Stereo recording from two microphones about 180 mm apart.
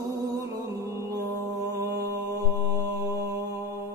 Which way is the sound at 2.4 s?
20° right (ahead or behind).